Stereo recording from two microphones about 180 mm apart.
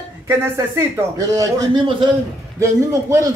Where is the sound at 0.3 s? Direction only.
15° right (ahead or behind).